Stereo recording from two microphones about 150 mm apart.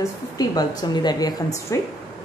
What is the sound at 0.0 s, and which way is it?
A woman's voice, 25° left (ahead or behind).